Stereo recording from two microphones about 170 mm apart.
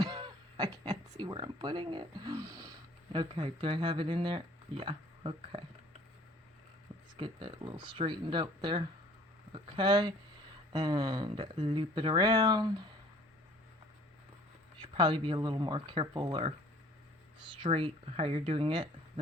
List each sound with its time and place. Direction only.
0.0 s speech: 25° right (ahead or behind)
7.2 s speech: 30° right (ahead or behind)
14.8 s speech: 25° right (ahead or behind)